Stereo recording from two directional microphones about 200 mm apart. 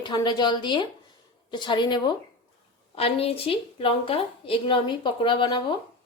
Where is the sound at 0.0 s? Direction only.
20° left (ahead or behind).